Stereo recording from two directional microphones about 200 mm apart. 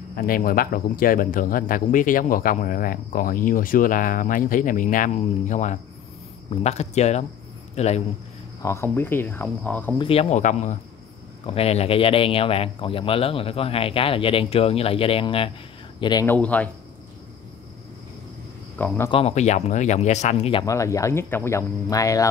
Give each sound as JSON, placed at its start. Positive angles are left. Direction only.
{"t": 0.1, "sound": "a man's voice", "side_deg": 45}
{"t": 8.6, "sound": "speech", "side_deg": 15}
{"t": 9.9, "sound": "speech", "side_deg": 30}
{"t": 16.3, "sound": "speech", "side_deg": 5}
{"t": 19.0, "sound": "speech", "side_deg": 30}
{"t": 20.6, "sound": "speech", "side_deg": 15}